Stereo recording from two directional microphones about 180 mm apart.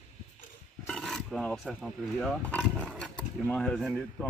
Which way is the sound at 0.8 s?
Centre (ahead or behind).